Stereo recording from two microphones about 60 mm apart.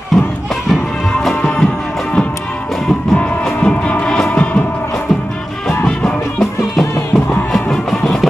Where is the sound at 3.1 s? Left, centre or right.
Left.